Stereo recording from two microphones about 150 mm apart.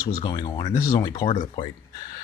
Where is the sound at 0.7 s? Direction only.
60° left (ahead or behind).